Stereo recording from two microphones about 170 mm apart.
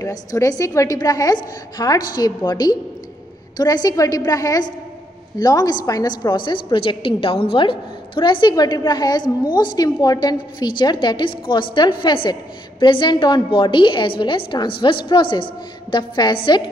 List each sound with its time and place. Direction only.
0.0 s a woman's voice: 20° left (ahead or behind)